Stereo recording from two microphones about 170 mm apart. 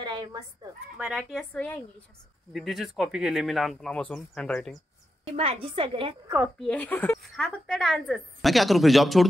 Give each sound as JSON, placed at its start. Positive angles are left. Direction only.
{"t": 0.0, "sound": "speech", "side_deg": -25}
{"t": 0.9, "sound": "a woman's voice", "side_deg": -5}
{"t": 5.2, "sound": "a woman's voice", "side_deg": -35}
{"t": 6.2, "sound": "a woman's voice", "side_deg": -10}
{"t": 6.6, "sound": "a woman's voice", "side_deg": 10}